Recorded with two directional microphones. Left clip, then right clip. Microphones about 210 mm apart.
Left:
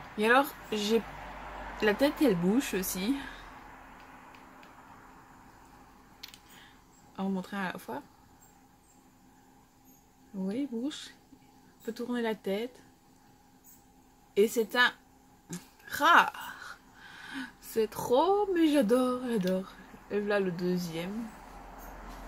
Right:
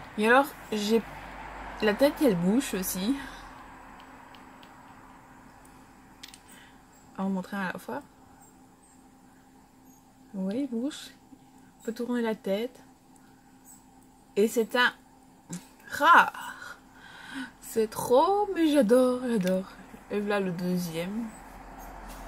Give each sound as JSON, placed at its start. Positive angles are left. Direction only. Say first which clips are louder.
{"t": 0.2, "sound": "speech", "louder": "right 3 dB", "side_deg": -5}
{"t": 7.2, "sound": "speech", "louder": "right 2 dB", "side_deg": 0}
{"t": 10.4, "sound": "speech", "louder": "right 3 dB", "side_deg": -5}
{"t": 14.3, "sound": "speech", "louder": "right 1 dB", "side_deg": -5}